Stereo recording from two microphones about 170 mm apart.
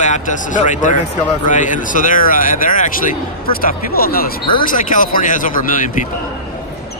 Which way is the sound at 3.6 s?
60° left (ahead or behind).